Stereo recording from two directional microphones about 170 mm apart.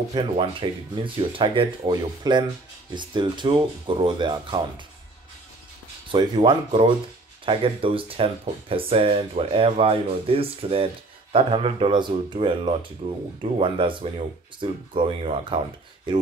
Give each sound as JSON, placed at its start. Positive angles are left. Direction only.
{"t": 0.1, "sound": "speech", "side_deg": -30}
{"t": 6.1, "sound": "speech", "side_deg": -30}